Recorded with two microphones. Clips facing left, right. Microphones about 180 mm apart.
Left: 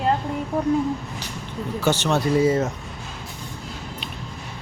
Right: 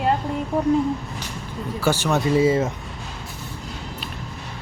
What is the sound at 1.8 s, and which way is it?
Speech, 10° right (ahead or behind).